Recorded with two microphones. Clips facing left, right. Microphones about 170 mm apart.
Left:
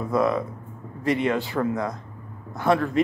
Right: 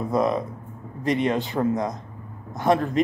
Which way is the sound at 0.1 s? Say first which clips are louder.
Left 1 dB; 20° right (ahead or behind).